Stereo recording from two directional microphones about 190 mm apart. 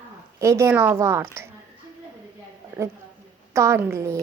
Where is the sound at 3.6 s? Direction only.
15° right (ahead or behind).